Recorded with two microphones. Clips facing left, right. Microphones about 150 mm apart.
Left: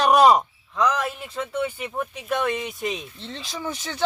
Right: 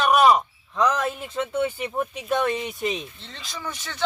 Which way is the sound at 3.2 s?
30° left (ahead or behind).